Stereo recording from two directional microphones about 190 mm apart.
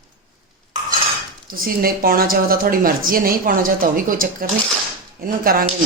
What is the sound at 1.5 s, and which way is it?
A woman's voice, 50° right (ahead or behind).